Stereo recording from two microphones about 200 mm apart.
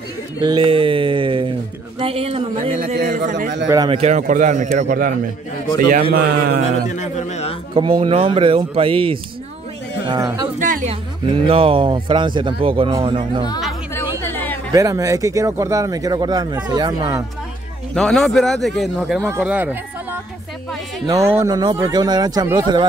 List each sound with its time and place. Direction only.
0.4 s a sound: 25° right (ahead or behind)
2.0 s a man's voice: 30° right (ahead or behind)
3.6 s speech: 15° right (ahead or behind)
3.9 s a man's voice: 35° right (ahead or behind)
7.0 s a man's voice: 35° left (ahead or behind)
7.7 s speech: 25° right (ahead or behind)
10.6 s speech: 40° right (ahead or behind)
11.4 s speech: 25° right (ahead or behind)
14.2 s a sound: 10° left (ahead or behind)
14.7 s speech: 15° right (ahead or behind)
17.9 s speech: centre (ahead or behind); by 22.8 s 20° right (ahead or behind)